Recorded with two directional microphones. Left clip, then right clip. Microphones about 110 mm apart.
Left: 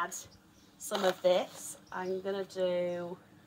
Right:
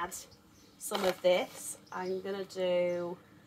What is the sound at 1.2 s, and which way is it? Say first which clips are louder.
Speech: even; 25° right (ahead or behind).